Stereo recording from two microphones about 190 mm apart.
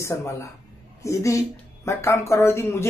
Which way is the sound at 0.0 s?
15° left (ahead or behind).